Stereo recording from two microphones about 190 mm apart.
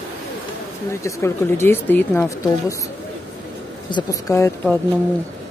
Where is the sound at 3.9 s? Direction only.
20° left (ahead or behind).